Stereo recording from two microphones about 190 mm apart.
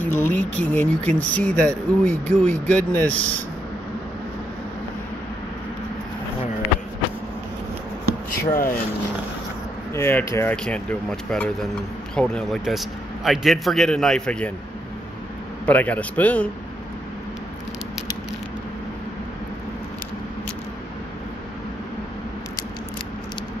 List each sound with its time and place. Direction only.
0.0 s speech: 10° left (ahead or behind)
8.3 s speech: 50° left (ahead or behind)
9.9 s a man's voice: 15° left (ahead or behind)
15.6 s speech: 10° left (ahead or behind)